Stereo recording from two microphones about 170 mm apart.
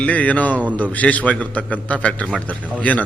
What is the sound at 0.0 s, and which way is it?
Speech, 10° left (ahead or behind).